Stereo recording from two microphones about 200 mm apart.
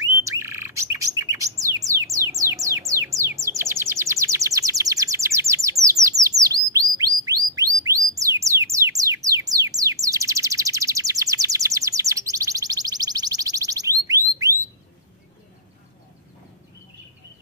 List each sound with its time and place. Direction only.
0.4 s bird: 15° right (ahead or behind)
2.9 s music: 15° right (ahead or behind)